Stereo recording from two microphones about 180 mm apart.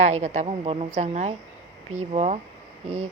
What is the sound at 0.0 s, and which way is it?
Speech, 40° right (ahead or behind).